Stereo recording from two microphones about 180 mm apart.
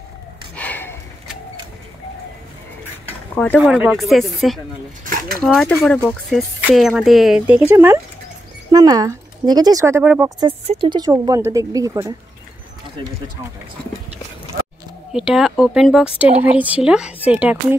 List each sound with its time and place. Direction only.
0.6 s a sound: 10° left (ahead or behind)
3.3 s speech: 10° left (ahead or behind)
3.6 s speech: 5° right (ahead or behind)
5.0 s speech: 50° right (ahead or behind)
5.4 s speech: 5° left (ahead or behind)
10.7 s speech: 25° right (ahead or behind)
15.1 s speech: 5° right (ahead or behind)